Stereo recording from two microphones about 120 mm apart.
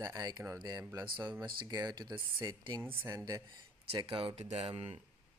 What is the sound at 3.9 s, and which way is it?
Speech, 50° right (ahead or behind).